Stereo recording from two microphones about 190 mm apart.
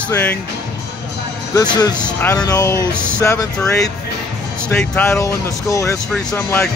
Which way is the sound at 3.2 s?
15° left (ahead or behind).